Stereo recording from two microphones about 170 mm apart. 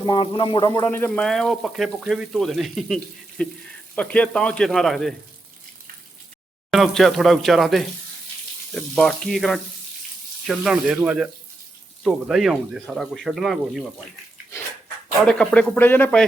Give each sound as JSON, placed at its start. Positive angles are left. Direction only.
{"t": 0.0, "sound": "speech", "side_deg": 25}
{"t": 0.7, "sound": "speech", "side_deg": 15}
{"t": 6.7, "sound": "speech", "side_deg": 0}
{"t": 15.2, "sound": "speech", "side_deg": 5}